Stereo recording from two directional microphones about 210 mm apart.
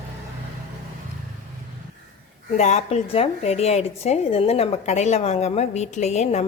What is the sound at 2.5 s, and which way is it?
A woman's voice, 35° left (ahead or behind).